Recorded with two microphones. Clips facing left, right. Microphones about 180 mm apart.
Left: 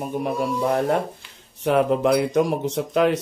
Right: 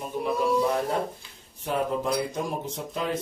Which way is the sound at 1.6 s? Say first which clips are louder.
Left 8 dB; 75° left (ahead or behind).